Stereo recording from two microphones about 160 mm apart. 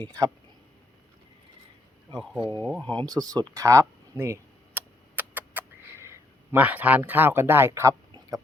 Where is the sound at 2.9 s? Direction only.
25° right (ahead or behind).